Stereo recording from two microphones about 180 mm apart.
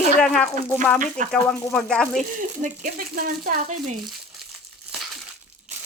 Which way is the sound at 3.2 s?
50° right (ahead or behind).